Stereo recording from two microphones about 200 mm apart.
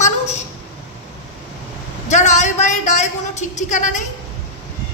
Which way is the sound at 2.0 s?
35° left (ahead or behind).